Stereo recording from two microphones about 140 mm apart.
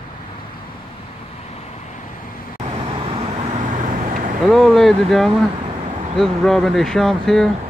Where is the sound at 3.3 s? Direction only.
55° right (ahead or behind).